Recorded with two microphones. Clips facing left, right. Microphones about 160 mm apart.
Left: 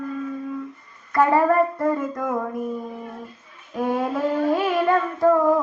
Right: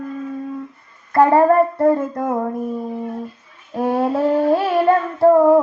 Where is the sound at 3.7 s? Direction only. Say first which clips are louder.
Right 5 dB; 30° right (ahead or behind).